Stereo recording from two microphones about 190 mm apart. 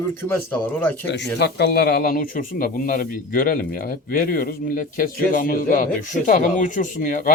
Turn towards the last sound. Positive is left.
turn(degrees=45)  # may be behind; listen again after turning